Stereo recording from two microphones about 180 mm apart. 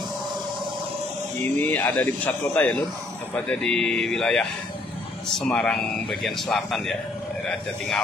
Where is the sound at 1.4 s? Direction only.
10° left (ahead or behind).